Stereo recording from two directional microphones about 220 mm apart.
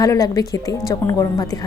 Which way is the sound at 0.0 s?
15° left (ahead or behind).